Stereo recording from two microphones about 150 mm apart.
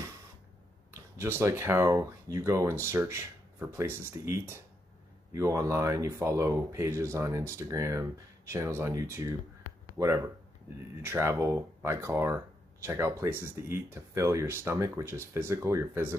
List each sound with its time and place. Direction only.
0.9 s speech: 15° right (ahead or behind)